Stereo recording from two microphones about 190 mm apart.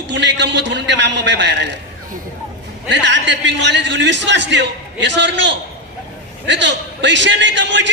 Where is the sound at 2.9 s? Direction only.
65° right (ahead or behind).